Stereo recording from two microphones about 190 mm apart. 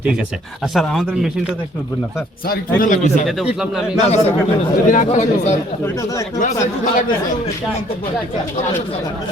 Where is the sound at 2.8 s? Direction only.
45° left (ahead or behind).